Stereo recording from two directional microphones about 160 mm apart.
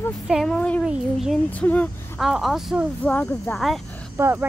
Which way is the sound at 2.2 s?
Centre (ahead or behind).